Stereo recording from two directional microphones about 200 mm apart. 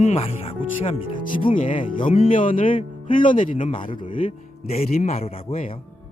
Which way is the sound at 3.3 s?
40° left (ahead or behind).